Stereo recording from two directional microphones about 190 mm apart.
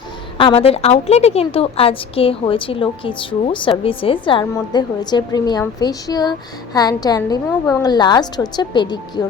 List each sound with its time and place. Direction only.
0.3 s a woman's voice: 30° left (ahead or behind)